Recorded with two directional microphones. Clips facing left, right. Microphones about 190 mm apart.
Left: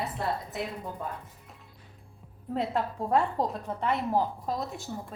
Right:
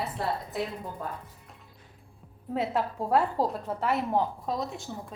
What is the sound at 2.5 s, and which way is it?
A woman's voice, 5° right (ahead or behind).